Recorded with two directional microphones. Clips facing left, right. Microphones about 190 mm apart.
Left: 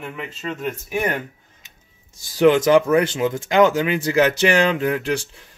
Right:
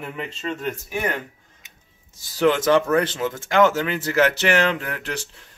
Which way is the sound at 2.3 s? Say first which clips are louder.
Left 4 dB; 15° left (ahead or behind).